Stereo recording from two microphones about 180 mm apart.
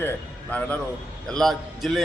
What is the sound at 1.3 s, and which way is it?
Speech, centre (ahead or behind).